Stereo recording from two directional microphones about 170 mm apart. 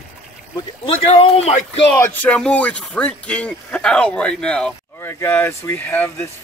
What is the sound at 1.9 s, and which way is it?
Speech, 10° left (ahead or behind).